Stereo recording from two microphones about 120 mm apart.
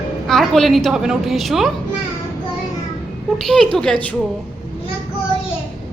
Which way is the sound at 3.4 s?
5° left (ahead or behind).